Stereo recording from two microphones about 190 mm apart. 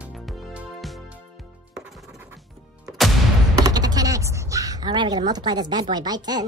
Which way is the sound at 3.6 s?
20° right (ahead or behind).